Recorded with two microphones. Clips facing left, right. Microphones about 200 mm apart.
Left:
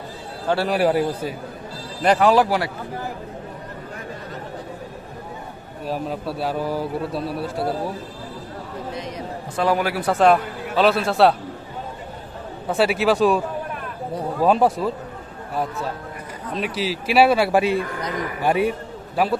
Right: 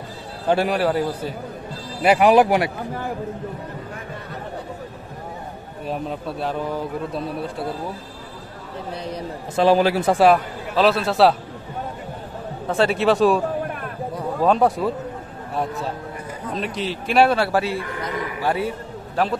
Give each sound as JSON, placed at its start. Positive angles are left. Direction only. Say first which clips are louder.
{"t": 0.7, "sound": "speech", "louder": "left 2 dB", "side_deg": 10}
{"t": 2.0, "sound": "speech", "louder": "right 2 dB", "side_deg": -10}
{"t": 5.9, "sound": "a man's voice", "louder": "left 1 dB", "side_deg": 5}
{"t": 8.9, "sound": "a man's voice", "louder": "right 4 dB", "side_deg": -35}
{"t": 10.1, "sound": "a man's voice", "louder": "left 2 dB", "side_deg": -5}
{"t": 12.6, "sound": "a man's voice", "louder": "even", "side_deg": 5}
{"t": 14.4, "sound": "a man's voice", "louder": "even", "side_deg": 5}
{"t": 16.5, "sound": "speech", "louder": "left 2 dB", "side_deg": 5}